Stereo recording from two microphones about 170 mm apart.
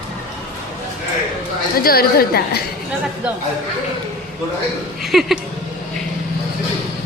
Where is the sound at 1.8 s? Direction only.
65° left (ahead or behind).